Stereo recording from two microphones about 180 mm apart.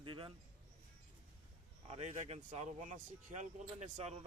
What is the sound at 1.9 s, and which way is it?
Speech, 40° right (ahead or behind).